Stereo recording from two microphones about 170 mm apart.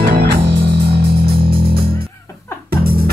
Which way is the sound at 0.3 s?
80° right.